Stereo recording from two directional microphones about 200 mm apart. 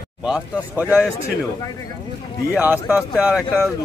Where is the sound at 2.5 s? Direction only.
10° right (ahead or behind).